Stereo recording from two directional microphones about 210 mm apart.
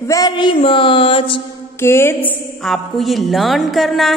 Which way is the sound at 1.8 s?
10° left (ahead or behind).